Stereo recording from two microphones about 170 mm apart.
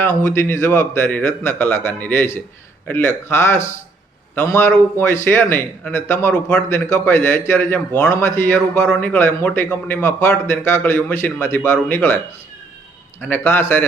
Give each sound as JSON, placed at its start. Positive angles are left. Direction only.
{"t": 0.0, "sound": "a man's voice", "side_deg": 15}
{"t": 4.4, "sound": "a man's voice", "side_deg": 15}
{"t": 13.2, "sound": "a man's voice", "side_deg": 10}